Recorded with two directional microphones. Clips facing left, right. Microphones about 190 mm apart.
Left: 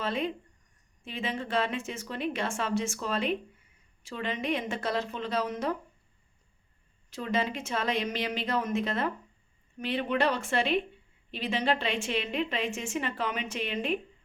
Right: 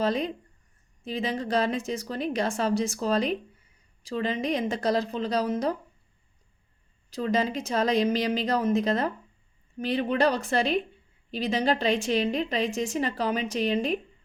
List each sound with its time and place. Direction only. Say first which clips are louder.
0.0 s a woman's voice: right 5 dB; 40° right (ahead or behind)
7.1 s a woman's voice: right 4 dB; 40° right (ahead or behind)